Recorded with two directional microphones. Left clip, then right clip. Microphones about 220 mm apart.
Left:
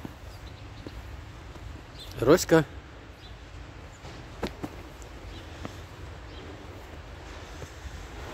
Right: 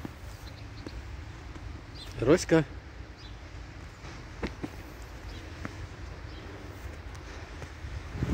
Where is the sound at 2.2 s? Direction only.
5° left (ahead or behind).